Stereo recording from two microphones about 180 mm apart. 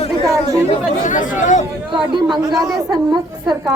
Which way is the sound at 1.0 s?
45° left (ahead or behind).